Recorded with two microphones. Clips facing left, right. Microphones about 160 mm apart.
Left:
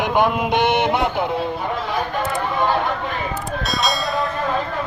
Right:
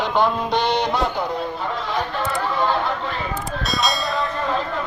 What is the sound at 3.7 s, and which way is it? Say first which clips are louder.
Vehicle: even; centre (ahead or behind).